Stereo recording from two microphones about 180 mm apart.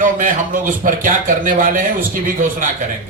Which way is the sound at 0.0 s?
45° right (ahead or behind).